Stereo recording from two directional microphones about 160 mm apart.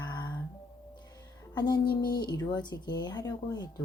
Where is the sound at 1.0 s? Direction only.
25° left (ahead or behind).